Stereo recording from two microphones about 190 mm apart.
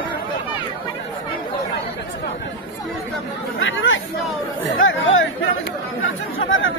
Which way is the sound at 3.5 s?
90° left.